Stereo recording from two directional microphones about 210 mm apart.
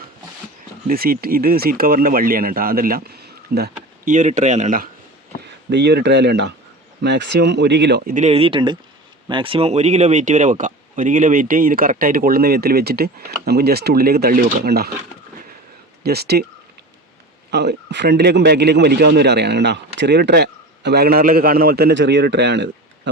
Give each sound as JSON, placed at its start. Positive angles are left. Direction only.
{"t": 0.9, "sound": "a man's voice", "side_deg": -45}
{"t": 5.7, "sound": "a man's voice", "side_deg": -55}
{"t": 16.0, "sound": "a man's voice", "side_deg": -50}
{"t": 17.5, "sound": "a man's voice", "side_deg": -50}